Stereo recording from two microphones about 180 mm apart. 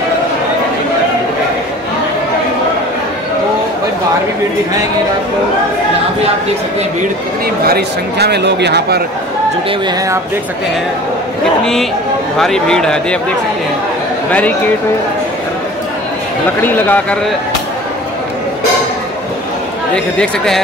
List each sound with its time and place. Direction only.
7.6 s speech: 60° right (ahead or behind)
12.4 s speech: 5° left (ahead or behind)
16.6 s speech: 10° left (ahead or behind)
20.2 s speech: centre (ahead or behind)